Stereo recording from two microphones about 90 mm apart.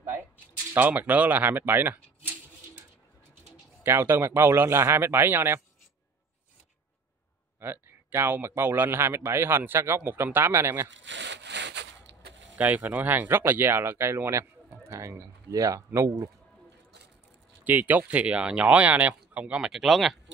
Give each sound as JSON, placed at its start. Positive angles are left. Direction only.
{"t": 0.7, "sound": "speech", "side_deg": -20}
{"t": 3.8, "sound": "speech", "side_deg": -25}
{"t": 7.6, "sound": "speech", "side_deg": -25}
{"t": 12.5, "sound": "speech", "side_deg": -20}
{"t": 17.6, "sound": "speech", "side_deg": -20}